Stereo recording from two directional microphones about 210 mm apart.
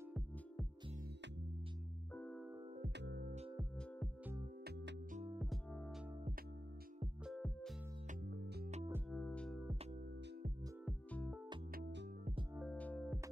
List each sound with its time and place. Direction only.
2.1 s music: 5° left (ahead or behind)
3.0 s music: 50° right (ahead or behind)
5.7 s music: 5° left (ahead or behind)
7.2 s music: centre (ahead or behind)
9.1 s music: 5° left (ahead or behind)
10.9 s music: 5° left (ahead or behind)
11.7 s music: 55° right (ahead or behind)
12.5 s music: 5° left (ahead or behind)